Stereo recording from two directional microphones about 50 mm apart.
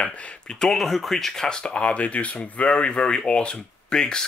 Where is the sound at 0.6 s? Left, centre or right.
Centre.